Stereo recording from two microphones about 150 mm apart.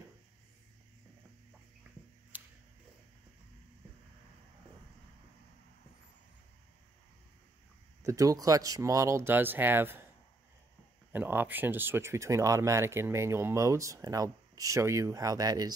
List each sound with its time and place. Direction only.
2.3 s a sound: 10° right (ahead or behind)
8.0 s speech: 20° right (ahead or behind)
11.1 s speech: 15° right (ahead or behind)